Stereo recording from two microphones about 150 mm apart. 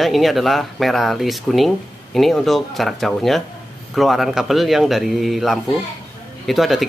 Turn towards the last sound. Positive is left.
turn(degrees=0)  # may be behind; listen again after turning